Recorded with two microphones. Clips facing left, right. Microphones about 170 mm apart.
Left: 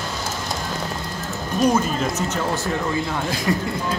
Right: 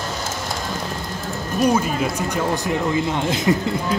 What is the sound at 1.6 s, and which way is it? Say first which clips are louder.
Speech: right 1 dB; 10° right (ahead or behind).